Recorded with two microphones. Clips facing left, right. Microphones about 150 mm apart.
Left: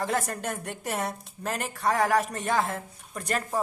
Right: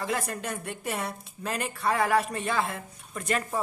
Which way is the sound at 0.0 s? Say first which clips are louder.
Left 2 dB; 45° left (ahead or behind).